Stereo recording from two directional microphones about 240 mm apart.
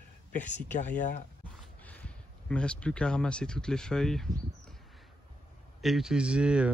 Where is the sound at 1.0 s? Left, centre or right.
Left.